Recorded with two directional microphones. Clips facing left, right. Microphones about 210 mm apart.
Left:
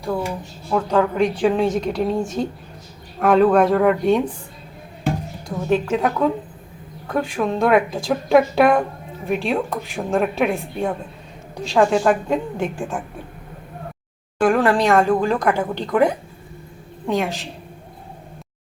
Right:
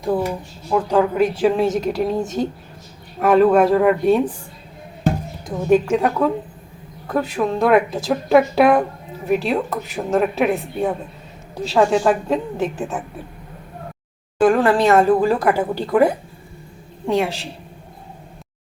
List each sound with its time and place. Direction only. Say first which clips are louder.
0.7 s a woman's voice: right 1 dB; 10° right (ahead or behind)
5.5 s a woman's voice: right 4 dB; 10° right (ahead or behind)
7.3 s speech: right 1 dB; 5° right (ahead or behind)
14.4 s speech: right 2 dB; centre (ahead or behind)